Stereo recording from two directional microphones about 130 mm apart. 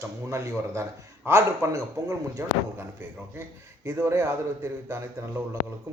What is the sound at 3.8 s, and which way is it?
A man's voice, 20° right (ahead or behind).